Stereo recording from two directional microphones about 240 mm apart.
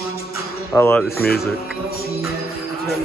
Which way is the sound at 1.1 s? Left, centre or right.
Left.